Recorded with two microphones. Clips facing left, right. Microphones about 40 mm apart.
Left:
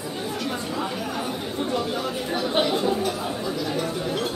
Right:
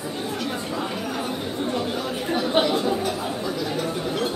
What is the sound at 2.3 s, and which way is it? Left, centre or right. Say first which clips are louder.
Chatter: right 2 dB; centre.